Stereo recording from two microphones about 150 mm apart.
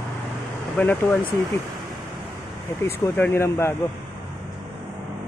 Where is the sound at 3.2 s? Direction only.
15° left (ahead or behind).